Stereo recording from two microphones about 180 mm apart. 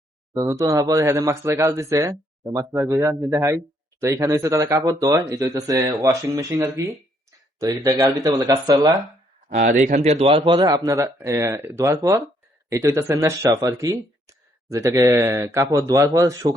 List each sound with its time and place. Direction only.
0.3 s speech: 20° right (ahead or behind)
9.6 s speech: 45° right (ahead or behind); by 16.5 s 20° right (ahead or behind)